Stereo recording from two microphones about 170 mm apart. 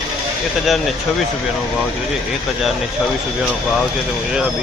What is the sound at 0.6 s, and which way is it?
Speech, centre (ahead or behind).